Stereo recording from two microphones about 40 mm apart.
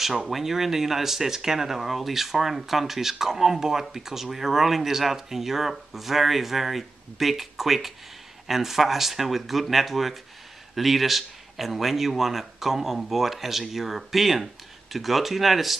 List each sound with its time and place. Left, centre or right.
0.3 s speech: centre